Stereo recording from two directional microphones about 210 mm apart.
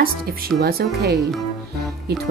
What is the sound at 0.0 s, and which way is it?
Speech, 45° right (ahead or behind).